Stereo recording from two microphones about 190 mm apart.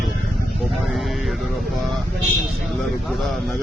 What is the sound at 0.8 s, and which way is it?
Speech, centre (ahead or behind).